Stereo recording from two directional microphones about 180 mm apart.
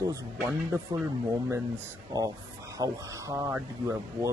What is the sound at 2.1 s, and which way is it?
Speech, 20° right (ahead or behind).